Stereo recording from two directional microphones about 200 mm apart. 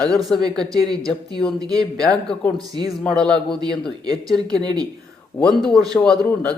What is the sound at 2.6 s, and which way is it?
Speech, 20° right (ahead or behind).